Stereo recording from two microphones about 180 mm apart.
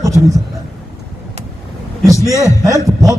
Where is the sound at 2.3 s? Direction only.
20° right (ahead or behind).